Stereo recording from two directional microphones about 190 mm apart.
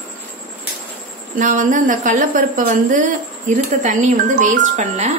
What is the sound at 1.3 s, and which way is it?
A woman's voice, 45° right (ahead or behind).